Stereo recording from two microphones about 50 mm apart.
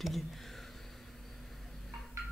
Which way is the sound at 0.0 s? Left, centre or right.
Centre.